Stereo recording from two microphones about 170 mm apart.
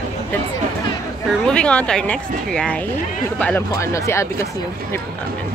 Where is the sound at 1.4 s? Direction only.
5° left (ahead or behind).